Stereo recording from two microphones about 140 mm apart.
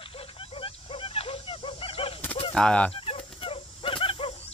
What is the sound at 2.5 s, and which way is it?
Speech, 5° left (ahead or behind).